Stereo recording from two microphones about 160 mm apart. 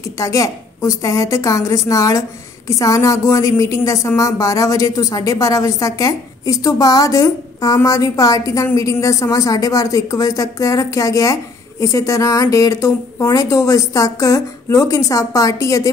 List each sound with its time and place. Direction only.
0.2 s speech: 20° left (ahead or behind)